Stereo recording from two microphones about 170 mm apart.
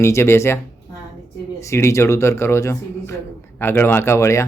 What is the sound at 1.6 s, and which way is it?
Speech, 15° left (ahead or behind).